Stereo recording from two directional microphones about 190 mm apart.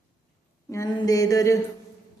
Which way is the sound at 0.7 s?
20° left (ahead or behind).